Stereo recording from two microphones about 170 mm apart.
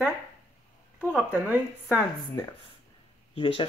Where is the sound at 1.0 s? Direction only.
5° right (ahead or behind).